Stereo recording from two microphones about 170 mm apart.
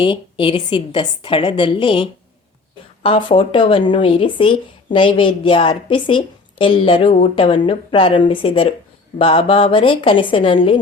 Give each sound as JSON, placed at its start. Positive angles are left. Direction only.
{"t": 0.0, "sound": "a woman's voice", "side_deg": 30}